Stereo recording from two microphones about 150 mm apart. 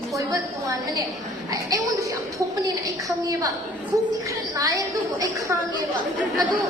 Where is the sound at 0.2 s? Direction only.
20° right (ahead or behind).